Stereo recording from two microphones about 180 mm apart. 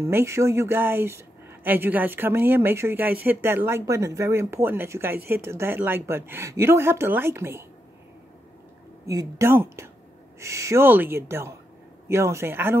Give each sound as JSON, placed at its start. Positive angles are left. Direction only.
{"t": 0.0, "sound": "speech", "side_deg": -15}
{"t": 9.0, "sound": "speech", "side_deg": -20}